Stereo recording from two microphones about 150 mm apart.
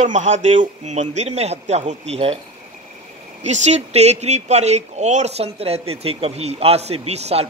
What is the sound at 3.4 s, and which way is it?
Speech, 50° right (ahead or behind).